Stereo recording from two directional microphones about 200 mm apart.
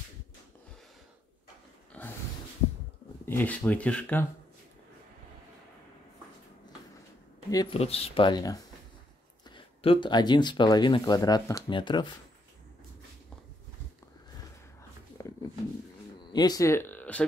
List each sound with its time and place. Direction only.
1.9 s snort: 5° left (ahead or behind)
3.3 s speech: 10° left (ahead or behind)
7.5 s speech: 30° left (ahead or behind)
9.6 s speech: 25° left (ahead or behind)
15.2 s roaring cats: 15° left (ahead or behind)
16.3 s a sound: 20° left (ahead or behind)